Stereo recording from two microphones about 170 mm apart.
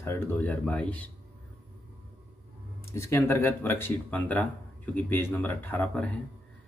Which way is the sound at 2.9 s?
15° left (ahead or behind).